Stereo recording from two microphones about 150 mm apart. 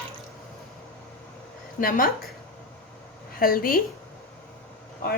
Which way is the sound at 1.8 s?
70° left (ahead or behind).